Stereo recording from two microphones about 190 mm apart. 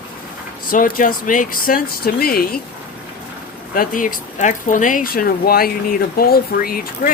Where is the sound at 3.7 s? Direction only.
45° left (ahead or behind).